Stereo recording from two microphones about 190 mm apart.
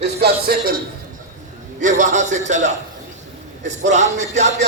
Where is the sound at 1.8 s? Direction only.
40° right (ahead or behind).